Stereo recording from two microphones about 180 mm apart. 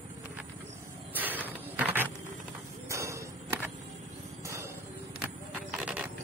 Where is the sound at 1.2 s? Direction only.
10° right (ahead or behind).